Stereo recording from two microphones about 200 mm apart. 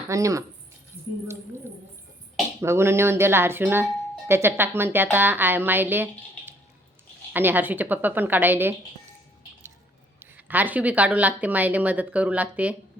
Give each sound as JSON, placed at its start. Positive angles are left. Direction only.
{"t": 0.1, "sound": "speech", "side_deg": -15}
{"t": 2.6, "sound": "speech", "side_deg": -10}
{"t": 10.2, "sound": "speech", "side_deg": -10}